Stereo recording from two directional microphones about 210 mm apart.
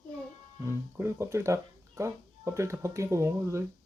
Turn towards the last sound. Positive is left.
turn(degrees=-15)  # may be behind; listen again after turning